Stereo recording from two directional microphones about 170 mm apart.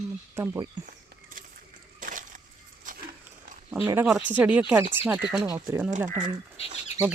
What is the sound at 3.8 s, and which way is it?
Speech, 10° right (ahead or behind).